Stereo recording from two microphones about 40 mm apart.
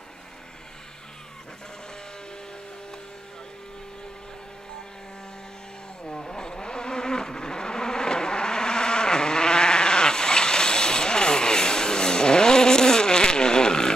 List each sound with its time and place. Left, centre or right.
6.0 s insect: centre